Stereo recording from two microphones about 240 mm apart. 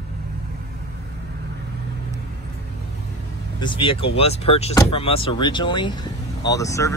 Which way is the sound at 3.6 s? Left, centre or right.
Left.